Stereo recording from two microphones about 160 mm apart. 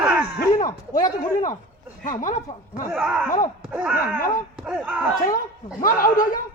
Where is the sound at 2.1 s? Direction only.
55° left (ahead or behind).